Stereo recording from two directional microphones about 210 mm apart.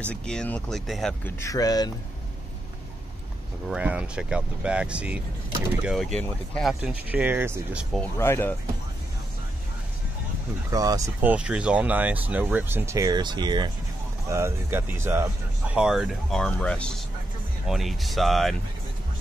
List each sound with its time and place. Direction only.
0.1 s speech: 5° left (ahead or behind)
1.4 s speech: 15° left (ahead or behind)
3.6 s speech: 5° right (ahead or behind)
7.9 s speech: 10° left (ahead or behind)
10.7 s speech: 15° right (ahead or behind); by 18.6 s centre (ahead or behind)